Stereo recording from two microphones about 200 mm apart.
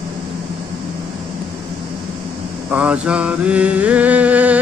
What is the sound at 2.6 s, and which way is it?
Mantra, 5° right (ahead or behind).